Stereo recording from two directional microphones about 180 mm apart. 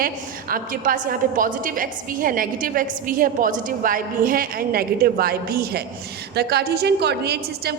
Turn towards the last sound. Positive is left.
turn(degrees=-65)  # may be behind; listen again after turning